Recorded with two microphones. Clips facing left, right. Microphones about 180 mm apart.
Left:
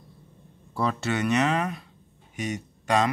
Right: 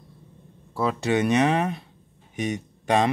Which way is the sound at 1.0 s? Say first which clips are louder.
Right 5 dB; 20° right (ahead or behind).